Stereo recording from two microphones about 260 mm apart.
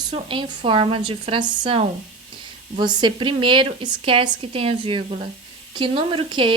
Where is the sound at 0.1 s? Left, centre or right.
Right.